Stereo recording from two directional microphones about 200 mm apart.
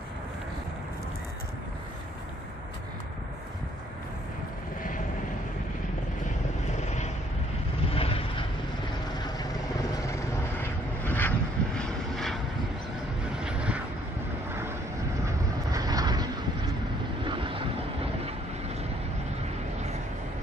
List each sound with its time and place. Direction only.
7.9 s vehicle: 30° left (ahead or behind)
10.6 s vehicle: 10° left (ahead or behind)
13.4 s vehicle: 5° right (ahead or behind)
15.2 s vehicle: 20° right (ahead or behind)
17.3 s vehicle: 25° right (ahead or behind)